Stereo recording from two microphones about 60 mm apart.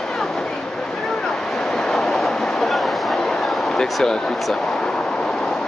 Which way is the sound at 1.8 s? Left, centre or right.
Centre.